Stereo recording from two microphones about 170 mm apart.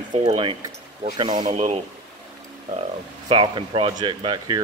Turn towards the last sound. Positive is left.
turn(degrees=-25)  # may be behind; listen again after turning